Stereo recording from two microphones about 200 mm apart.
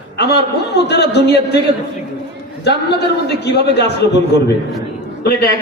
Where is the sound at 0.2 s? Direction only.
55° left (ahead or behind).